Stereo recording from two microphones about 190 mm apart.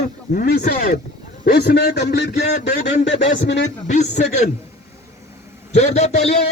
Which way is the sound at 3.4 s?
65° left (ahead or behind).